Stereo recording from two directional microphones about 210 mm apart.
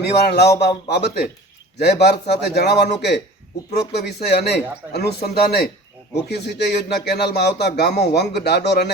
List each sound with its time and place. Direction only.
0.0 s speech: 50° left (ahead or behind)